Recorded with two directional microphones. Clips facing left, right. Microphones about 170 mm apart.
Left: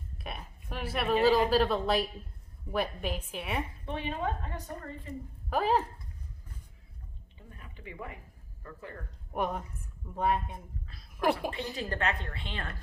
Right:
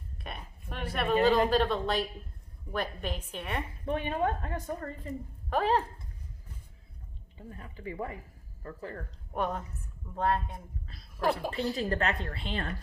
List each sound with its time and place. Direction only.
0.2 s a woman's voice: 5° left (ahead or behind)
3.8 s a woman's voice: 50° right (ahead or behind)
5.5 s a woman's voice: 5° left (ahead or behind)
7.9 s speech: 35° right (ahead or behind)
9.3 s a woman's voice: 10° left (ahead or behind)
11.5 s speech: 35° right (ahead or behind)